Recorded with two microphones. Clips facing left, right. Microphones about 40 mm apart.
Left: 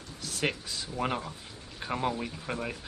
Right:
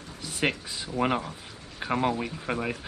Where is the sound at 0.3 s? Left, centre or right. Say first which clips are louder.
Right 4 dB; centre.